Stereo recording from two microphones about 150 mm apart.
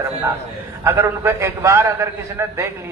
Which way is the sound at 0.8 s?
20° right (ahead or behind).